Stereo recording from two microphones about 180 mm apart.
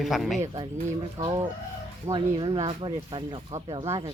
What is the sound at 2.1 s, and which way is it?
Speech, 30° right (ahead or behind).